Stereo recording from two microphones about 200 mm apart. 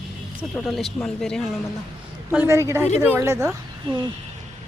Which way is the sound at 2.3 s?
10° right (ahead or behind).